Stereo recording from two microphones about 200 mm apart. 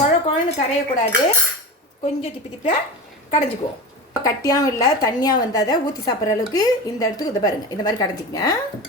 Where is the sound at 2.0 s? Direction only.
35° left (ahead or behind).